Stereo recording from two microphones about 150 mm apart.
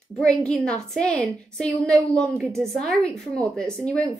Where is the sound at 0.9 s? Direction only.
5° left (ahead or behind).